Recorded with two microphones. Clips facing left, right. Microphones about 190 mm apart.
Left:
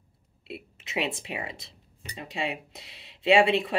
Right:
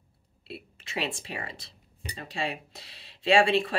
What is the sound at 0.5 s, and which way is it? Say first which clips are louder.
Speech: left 2 dB; 20° left (ahead or behind).